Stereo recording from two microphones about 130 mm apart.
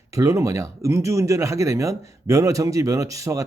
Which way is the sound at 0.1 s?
25° right (ahead or behind).